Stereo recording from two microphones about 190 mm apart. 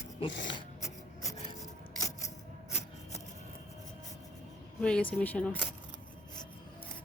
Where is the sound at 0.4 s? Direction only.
20° left (ahead or behind).